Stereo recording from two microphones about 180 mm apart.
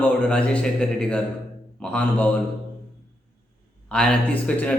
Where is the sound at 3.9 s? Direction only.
5° left (ahead or behind).